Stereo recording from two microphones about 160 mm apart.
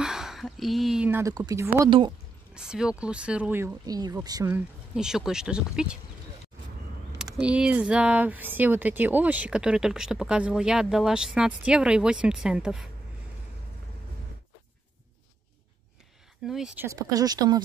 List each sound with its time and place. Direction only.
0.0 s a sound: 5° right (ahead or behind)
1.2 s speech: 20° right (ahead or behind)
2.5 s speech: 5° right (ahead or behind); by 4.5 s 25° right (ahead or behind)
4.5 s speech: 5° right (ahead or behind)
7.3 s speech: 5° right (ahead or behind)
16.4 s speech: 5° right (ahead or behind)
16.8 s speech: 20° right (ahead or behind)